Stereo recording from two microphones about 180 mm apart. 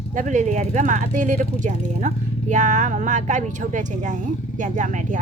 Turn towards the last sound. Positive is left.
turn(degrees=-45)  # may be behind; listen again after turning